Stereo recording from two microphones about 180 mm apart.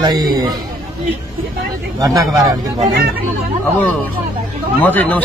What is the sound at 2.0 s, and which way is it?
Speech, 20° right (ahead or behind).